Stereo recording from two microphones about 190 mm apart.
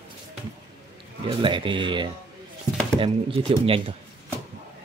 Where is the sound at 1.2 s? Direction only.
25° right (ahead or behind).